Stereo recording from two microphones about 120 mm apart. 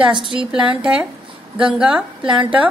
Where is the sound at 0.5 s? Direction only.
10° right (ahead or behind).